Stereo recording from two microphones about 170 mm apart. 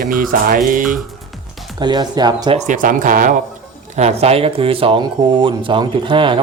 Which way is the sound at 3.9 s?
40° right (ahead or behind).